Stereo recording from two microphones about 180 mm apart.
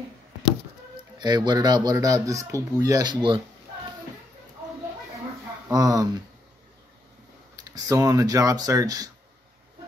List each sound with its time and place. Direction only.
1.1 s speech: 25° right (ahead or behind)
5.7 s speech: 20° right (ahead or behind)
7.7 s speech: 20° right (ahead or behind)